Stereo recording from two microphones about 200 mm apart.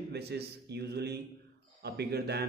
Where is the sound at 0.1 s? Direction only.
55° right (ahead or behind).